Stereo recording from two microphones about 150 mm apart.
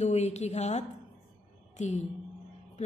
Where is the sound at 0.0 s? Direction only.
45° left (ahead or behind).